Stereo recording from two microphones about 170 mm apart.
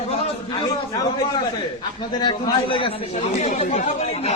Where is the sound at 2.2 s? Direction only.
30° left (ahead or behind).